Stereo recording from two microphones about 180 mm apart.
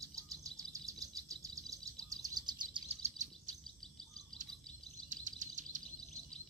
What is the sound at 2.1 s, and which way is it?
Bird vocalization, 20° right (ahead or behind).